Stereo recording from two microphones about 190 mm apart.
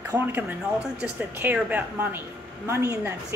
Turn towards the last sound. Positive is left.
turn(degrees=-15)  # may be behind; listen again after turning